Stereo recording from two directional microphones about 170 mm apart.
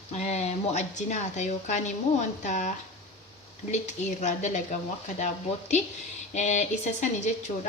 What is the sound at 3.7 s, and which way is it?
Speech, 45° left (ahead or behind).